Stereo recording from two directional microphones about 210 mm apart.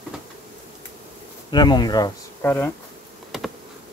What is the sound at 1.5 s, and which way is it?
Speech, 20° left (ahead or behind).